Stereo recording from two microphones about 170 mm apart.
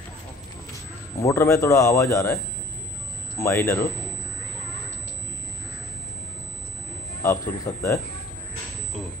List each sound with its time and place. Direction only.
1.2 s speech: 15° left (ahead or behind)
3.3 s speech: 15° left (ahead or behind)
7.2 s speech: 15° left (ahead or behind)